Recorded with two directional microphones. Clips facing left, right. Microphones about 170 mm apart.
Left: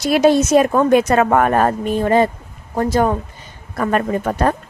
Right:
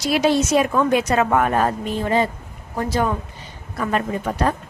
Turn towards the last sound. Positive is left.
turn(degrees=50)  # may be behind; listen again after turning